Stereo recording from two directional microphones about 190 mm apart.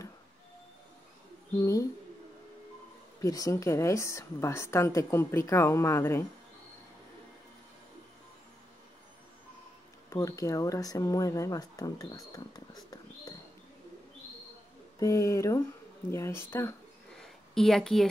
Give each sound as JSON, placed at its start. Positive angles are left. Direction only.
{"t": 1.6, "sound": "a woman's voice", "side_deg": 15}
{"t": 3.2, "sound": "a woman's voice", "side_deg": 20}
{"t": 10.0, "sound": "a woman's voice", "side_deg": 15}
{"t": 15.0, "sound": "a woman's voice", "side_deg": 15}
{"t": 17.1, "sound": "a sound", "side_deg": 0}